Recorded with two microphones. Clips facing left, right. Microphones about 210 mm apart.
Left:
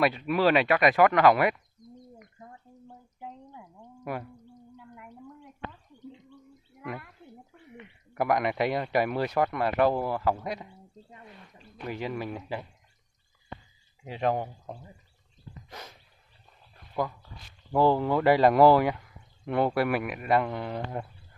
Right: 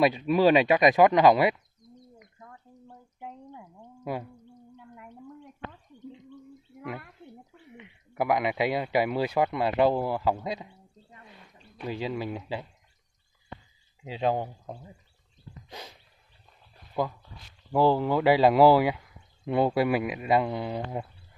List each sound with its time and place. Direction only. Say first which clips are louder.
0.0 s speech: right 3 dB; 15° right (ahead or behind)
4.0 s speech: right 2 dB; 15° right (ahead or behind)
7.7 s speech: even; 10° right (ahead or behind)
11.8 s speech: right 2 dB; 15° right (ahead or behind)
14.2 s speech: right 1 dB; 10° right (ahead or behind)
17.7 s speech: even; 5° right (ahead or behind)